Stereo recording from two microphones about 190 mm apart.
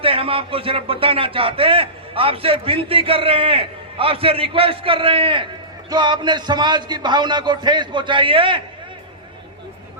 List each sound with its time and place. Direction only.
0.0 s speech: 30° right (ahead or behind)